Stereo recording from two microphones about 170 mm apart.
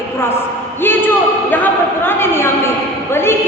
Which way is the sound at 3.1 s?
15° left (ahead or behind).